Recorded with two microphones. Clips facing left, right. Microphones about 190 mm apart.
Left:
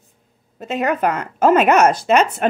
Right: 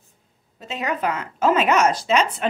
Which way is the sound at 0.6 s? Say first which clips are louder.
Left 6 dB; 55° left (ahead or behind).